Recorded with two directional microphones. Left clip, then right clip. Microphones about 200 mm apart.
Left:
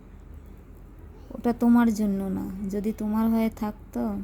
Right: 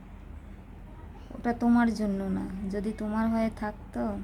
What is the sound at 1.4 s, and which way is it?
A woman's voice, 20° left (ahead or behind).